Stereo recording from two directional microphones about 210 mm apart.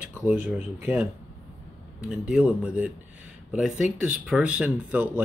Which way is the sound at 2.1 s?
5° right (ahead or behind).